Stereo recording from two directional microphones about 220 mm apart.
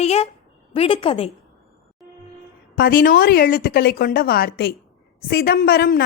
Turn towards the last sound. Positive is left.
turn(degrees=45)  # may be behind; listen again after turning